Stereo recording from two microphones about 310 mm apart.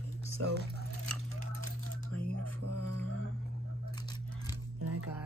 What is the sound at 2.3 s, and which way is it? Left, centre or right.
Music, right.